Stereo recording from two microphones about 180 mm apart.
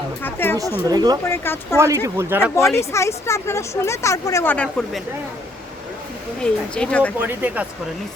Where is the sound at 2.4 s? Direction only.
15° left (ahead or behind).